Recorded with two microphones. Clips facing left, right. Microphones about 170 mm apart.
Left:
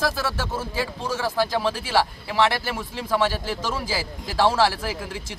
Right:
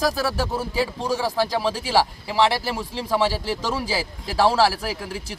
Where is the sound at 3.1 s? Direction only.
5° right (ahead or behind).